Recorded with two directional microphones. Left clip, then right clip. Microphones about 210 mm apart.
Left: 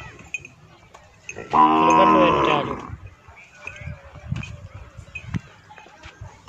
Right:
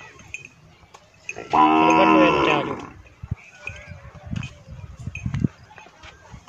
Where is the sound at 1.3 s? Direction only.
40° right (ahead or behind).